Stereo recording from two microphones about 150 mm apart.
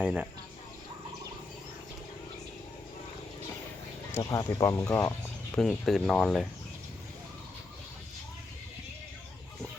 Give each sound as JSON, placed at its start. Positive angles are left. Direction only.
{"t": 0.0, "sound": "speech", "side_deg": -10}
{"t": 4.1, "sound": "speech", "side_deg": 20}
{"t": 5.5, "sound": "speech", "side_deg": 5}